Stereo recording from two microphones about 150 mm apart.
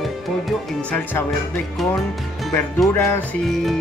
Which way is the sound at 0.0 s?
Centre (ahead or behind).